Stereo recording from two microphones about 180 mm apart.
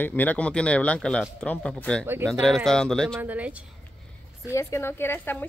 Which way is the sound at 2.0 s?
10° right (ahead or behind).